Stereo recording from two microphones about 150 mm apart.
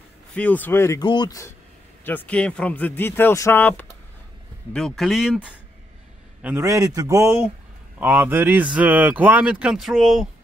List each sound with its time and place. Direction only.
0.3 s speech: 10° left (ahead or behind)
1.0 s speech: 30° left (ahead or behind)
2.0 s speech: 10° left (ahead or behind)
4.7 s speech: centre (ahead or behind)
6.4 s a man's voice: 15° right (ahead or behind); by 10.2 s centre (ahead or behind)